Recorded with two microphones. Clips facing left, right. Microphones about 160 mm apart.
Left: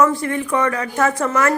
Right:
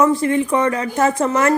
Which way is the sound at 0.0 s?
20° right (ahead or behind).